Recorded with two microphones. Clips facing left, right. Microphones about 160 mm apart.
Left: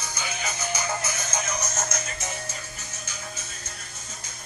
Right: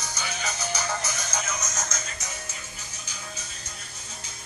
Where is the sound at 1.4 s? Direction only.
30° left (ahead or behind).